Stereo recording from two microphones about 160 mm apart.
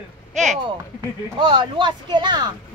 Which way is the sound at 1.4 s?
30° right (ahead or behind).